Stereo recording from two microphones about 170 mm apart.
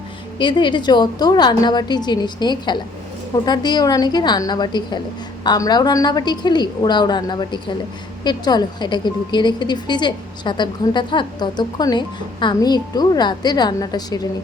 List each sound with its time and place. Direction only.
0.3 s a woman's voice: 25° left (ahead or behind)